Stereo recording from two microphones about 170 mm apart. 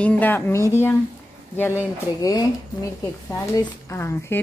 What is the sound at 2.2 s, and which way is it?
Speech, 20° left (ahead or behind).